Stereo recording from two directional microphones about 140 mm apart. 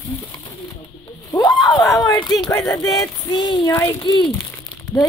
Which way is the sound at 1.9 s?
25° left (ahead or behind).